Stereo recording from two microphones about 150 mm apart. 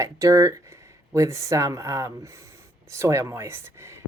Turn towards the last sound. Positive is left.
turn(degrees=-15)  # may be behind; listen again after turning